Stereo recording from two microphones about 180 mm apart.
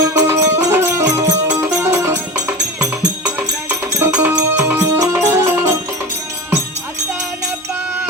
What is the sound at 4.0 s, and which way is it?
Music, 10° right (ahead or behind).